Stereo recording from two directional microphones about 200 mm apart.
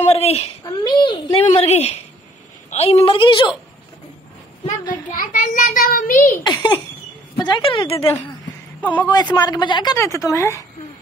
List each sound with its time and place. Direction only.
0.0 s a woman's voice: 30° left (ahead or behind)
4.8 s a child's voice: 45° left (ahead or behind)
6.3 s speech: 20° left (ahead or behind)
9.1 s speech: 20° left (ahead or behind)